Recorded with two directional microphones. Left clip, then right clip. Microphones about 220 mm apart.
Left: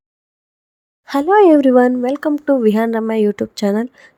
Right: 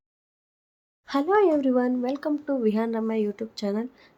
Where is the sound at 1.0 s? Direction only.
35° left (ahead or behind).